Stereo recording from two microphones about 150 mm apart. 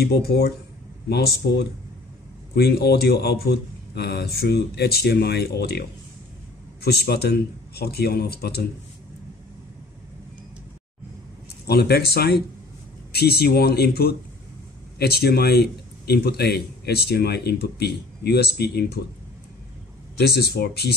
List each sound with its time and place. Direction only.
0.0 s a man's voice: 90° left
11.6 s a man's voice: 90° left
20.2 s a man's voice: 90° left